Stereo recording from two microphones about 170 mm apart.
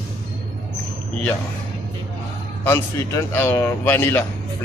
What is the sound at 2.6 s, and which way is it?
Speech, 15° left (ahead or behind).